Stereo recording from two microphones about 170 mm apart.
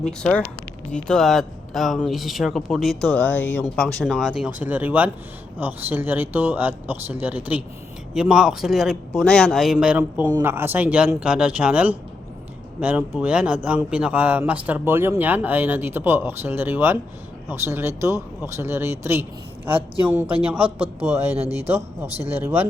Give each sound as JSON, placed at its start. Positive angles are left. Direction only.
{"t": 0.2, "sound": "speech", "side_deg": 5}
{"t": 20.6, "sound": "speech", "side_deg": -35}